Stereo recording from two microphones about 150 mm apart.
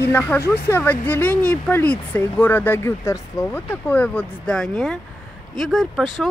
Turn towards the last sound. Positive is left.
turn(degrees=0)  # may be behind; listen again after turning